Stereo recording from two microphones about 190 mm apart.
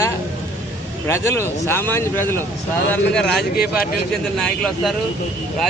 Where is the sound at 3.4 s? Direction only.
55° left (ahead or behind).